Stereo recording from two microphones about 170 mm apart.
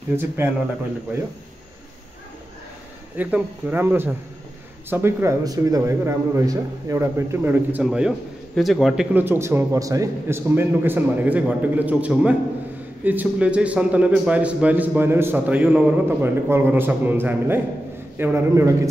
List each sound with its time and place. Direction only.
0.1 s a man's voice: 15° right (ahead or behind)
3.2 s a man's voice: 5° right (ahead or behind)
9.1 s a man's voice: 10° right (ahead or behind)